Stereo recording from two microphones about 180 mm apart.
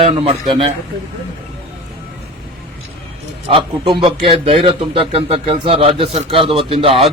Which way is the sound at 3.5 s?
30° right (ahead or behind).